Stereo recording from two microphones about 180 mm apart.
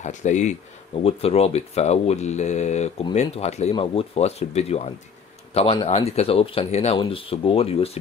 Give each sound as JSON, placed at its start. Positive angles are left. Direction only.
{"t": 0.0, "sound": "speech", "side_deg": 40}